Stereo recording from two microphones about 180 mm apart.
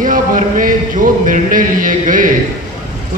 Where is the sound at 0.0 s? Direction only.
50° right (ahead or behind).